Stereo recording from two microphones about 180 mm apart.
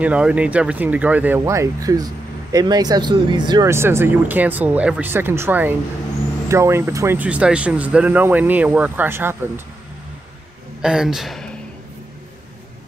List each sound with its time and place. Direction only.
0.0 s speech: 5° right (ahead or behind)
10.8 s speech: 5° right (ahead or behind)